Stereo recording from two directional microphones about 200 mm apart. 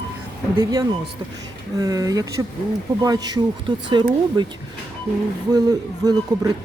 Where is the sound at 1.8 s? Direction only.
20° right (ahead or behind).